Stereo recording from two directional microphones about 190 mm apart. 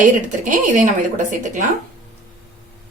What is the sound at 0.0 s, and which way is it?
A woman's voice, 45° right (ahead or behind).